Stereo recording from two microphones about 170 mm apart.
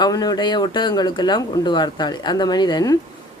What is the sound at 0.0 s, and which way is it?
Speech, 25° left (ahead or behind).